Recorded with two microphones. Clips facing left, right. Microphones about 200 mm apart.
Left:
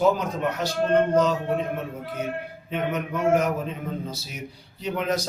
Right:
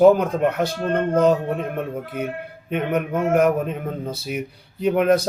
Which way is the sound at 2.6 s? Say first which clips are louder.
Right 5 dB; 55° right (ahead or behind).